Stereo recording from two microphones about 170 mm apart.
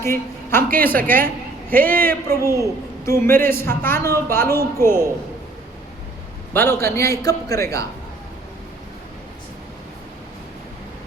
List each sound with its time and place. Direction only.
0.0 s a woman's voice: 15° left (ahead or behind)
6.5 s a woman's voice: 15° left (ahead or behind)